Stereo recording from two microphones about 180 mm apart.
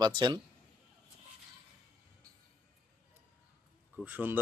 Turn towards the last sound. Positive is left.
turn(degrees=-10)  # may be behind; listen again after turning